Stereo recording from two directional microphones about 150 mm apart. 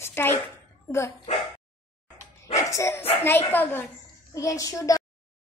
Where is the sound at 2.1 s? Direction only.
20° left (ahead or behind).